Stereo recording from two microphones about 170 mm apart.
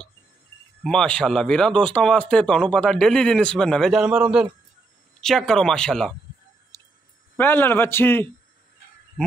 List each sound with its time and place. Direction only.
0.8 s a man's voice: 5° left (ahead or behind)
6.7 s a sound: 15° left (ahead or behind)
7.3 s a man's voice: 10° left (ahead or behind)